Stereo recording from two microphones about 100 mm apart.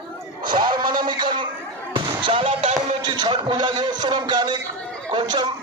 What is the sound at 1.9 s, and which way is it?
Fireworks, 55° right (ahead or behind).